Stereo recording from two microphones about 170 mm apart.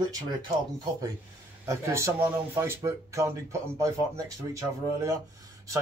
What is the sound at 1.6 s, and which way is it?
Speech, 15° right (ahead or behind).